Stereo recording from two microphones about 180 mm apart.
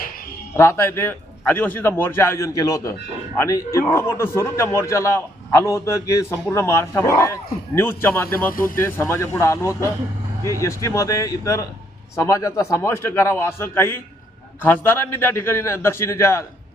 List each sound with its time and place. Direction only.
0.5 s a man's voice: 15° left (ahead or behind)